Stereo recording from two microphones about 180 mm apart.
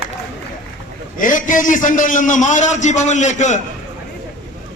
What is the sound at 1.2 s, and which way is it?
A man's voice, 45° left (ahead or behind).